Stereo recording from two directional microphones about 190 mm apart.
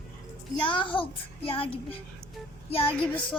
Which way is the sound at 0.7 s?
25° left (ahead or behind).